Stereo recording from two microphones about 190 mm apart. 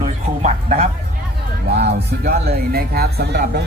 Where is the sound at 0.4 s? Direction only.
35° right (ahead or behind).